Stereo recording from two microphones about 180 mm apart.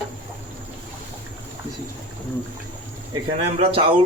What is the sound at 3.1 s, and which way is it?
Speech, 30° right (ahead or behind).